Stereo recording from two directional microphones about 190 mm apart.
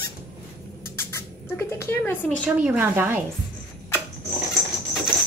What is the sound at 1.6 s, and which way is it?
Speech, 15° left (ahead or behind).